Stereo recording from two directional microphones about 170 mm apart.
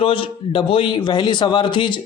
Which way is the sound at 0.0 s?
30° left (ahead or behind).